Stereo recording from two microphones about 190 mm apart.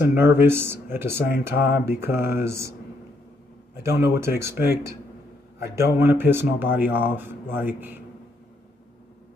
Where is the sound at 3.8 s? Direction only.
15° right (ahead or behind).